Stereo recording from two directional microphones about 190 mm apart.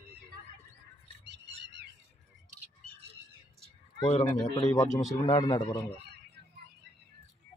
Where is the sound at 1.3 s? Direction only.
65° right (ahead or behind).